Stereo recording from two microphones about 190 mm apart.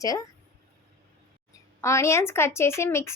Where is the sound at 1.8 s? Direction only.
15° left (ahead or behind).